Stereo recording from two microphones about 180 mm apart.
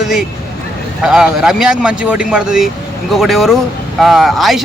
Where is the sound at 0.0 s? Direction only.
5° right (ahead or behind).